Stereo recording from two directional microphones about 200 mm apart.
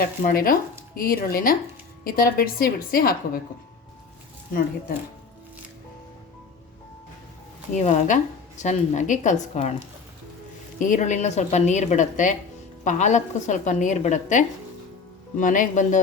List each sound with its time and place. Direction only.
0.0 s a woman's voice: 45° left (ahead or behind)
7.7 s a woman's voice: 35° left (ahead or behind)
10.8 s a woman's voice: 40° left (ahead or behind)